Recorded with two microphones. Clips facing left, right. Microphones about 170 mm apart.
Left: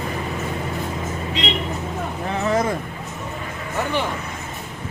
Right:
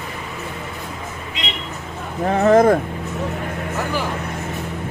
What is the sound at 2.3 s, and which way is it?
Speech, 50° right (ahead or behind).